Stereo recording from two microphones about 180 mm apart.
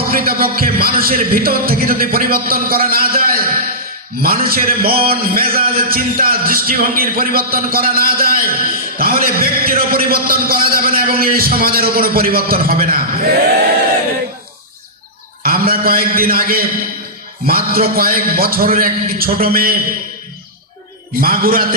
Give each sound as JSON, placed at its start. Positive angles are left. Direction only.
{"t": 0.1, "sound": "a man's voice", "side_deg": -55}
{"t": 15.4, "sound": "a man's voice", "side_deg": -55}
{"t": 21.2, "sound": "a man's voice", "side_deg": -55}